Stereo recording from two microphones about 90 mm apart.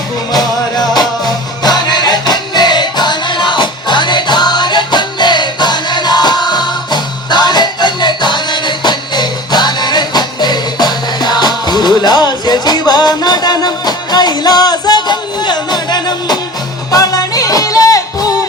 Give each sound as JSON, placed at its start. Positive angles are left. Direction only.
{"t": 0.3, "sound": "music", "side_deg": 45}